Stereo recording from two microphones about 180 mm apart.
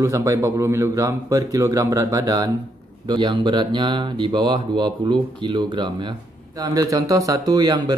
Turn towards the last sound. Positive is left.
turn(degrees=-20)  # may be behind; listen again after turning